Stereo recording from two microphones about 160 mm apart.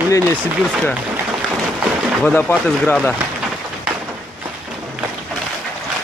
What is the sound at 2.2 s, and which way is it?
Speech, 10° left (ahead or behind).